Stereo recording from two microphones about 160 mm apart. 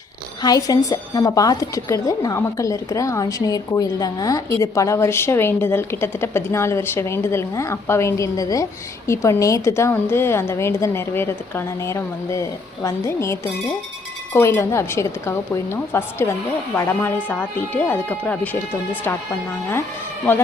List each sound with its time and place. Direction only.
0.4 s a woman's voice: 25° left (ahead or behind)